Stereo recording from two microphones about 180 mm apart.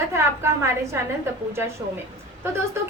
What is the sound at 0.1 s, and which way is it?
Speech, 15° right (ahead or behind).